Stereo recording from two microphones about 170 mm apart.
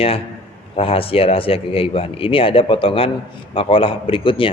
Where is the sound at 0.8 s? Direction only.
35° left (ahead or behind).